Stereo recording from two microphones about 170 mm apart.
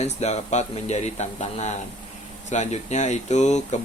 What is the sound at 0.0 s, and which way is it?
Speech, 40° left (ahead or behind).